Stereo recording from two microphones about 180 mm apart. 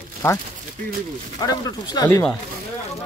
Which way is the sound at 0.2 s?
15° left (ahead or behind).